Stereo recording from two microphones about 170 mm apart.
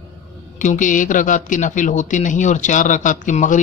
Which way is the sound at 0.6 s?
50° left (ahead or behind).